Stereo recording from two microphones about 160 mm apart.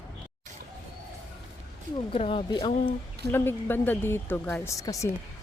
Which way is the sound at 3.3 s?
15° left (ahead or behind).